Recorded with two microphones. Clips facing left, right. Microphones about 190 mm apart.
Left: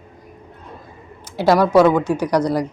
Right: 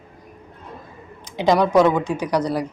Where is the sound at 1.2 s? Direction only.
5° left (ahead or behind).